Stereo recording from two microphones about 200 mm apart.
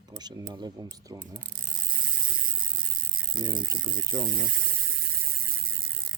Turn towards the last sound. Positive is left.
turn(degrees=-50)  # may be behind; listen again after turning